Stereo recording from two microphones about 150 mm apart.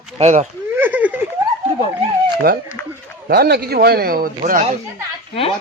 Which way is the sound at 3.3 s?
90° right.